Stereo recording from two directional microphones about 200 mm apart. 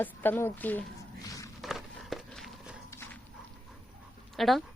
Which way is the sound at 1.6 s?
Centre (ahead or behind).